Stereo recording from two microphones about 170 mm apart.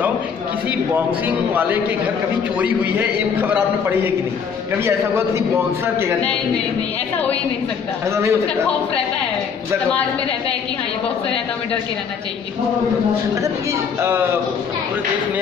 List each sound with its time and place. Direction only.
0.9 s a man's voice: 10° right (ahead or behind)
8.1 s a man's voice: 15° right (ahead or behind)
14.0 s a man's voice: 15° right (ahead or behind)